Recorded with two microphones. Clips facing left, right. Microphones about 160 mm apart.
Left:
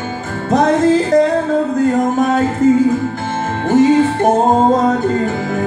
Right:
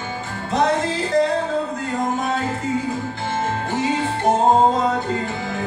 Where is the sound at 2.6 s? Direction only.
45° left (ahead or behind).